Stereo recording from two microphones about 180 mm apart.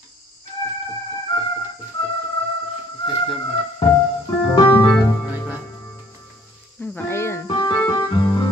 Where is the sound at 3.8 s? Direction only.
25° left (ahead or behind).